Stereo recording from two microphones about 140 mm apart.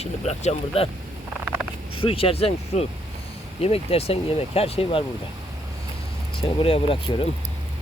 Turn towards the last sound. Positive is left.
turn(degrees=40)  # may be behind; listen again after turning